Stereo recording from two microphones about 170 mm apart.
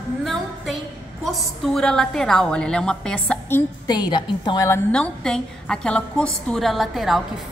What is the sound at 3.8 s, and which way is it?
A woman's voice, 25° left (ahead or behind).